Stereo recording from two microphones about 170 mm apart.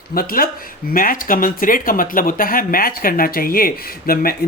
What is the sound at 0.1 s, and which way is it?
Speech, 60° left (ahead or behind).